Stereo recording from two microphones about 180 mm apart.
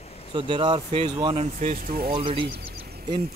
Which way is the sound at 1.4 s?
40° right (ahead or behind).